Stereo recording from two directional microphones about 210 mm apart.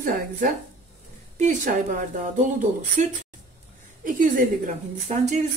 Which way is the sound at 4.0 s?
40° right (ahead or behind).